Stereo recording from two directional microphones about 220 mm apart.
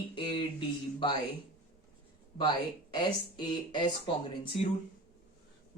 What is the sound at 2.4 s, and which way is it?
Speech, 20° left (ahead or behind).